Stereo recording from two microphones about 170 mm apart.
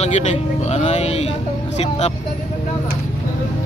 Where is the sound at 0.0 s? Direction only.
40° left (ahead or behind).